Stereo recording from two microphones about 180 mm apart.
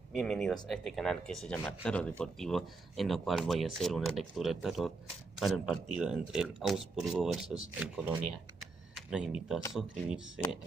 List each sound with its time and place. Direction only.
0.2 s speech: centre (ahead or behind)